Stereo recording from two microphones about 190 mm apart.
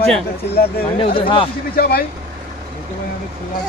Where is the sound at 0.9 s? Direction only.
30° left (ahead or behind).